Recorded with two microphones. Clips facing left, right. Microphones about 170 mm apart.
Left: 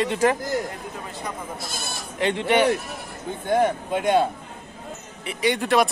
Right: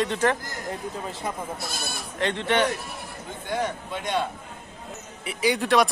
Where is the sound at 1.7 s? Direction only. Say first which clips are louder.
Even; 55° right (ahead or behind).